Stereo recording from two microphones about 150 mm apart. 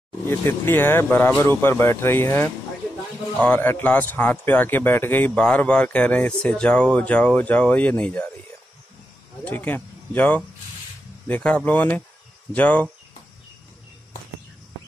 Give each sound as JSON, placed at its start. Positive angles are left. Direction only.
{"t": 0.3, "sound": "speech", "side_deg": 15}
{"t": 9.4, "sound": "speech", "side_deg": 10}